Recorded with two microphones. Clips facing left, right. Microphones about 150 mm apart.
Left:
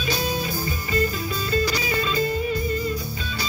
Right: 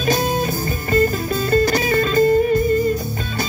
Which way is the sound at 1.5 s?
50° right (ahead or behind).